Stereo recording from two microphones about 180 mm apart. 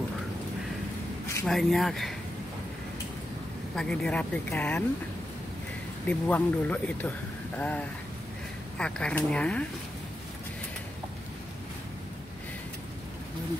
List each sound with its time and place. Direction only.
1.4 s speech: centre (ahead or behind)
3.7 s speech: 5° left (ahead or behind)
6.0 s speech: 10° left (ahead or behind)